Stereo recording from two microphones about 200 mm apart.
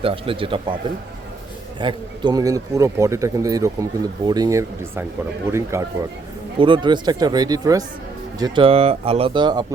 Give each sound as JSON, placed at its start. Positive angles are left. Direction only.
{"t": 0.0, "sound": "speech", "side_deg": -25}
{"t": 1.8, "sound": "speech", "side_deg": -25}
{"t": 6.6, "sound": "speech", "side_deg": -25}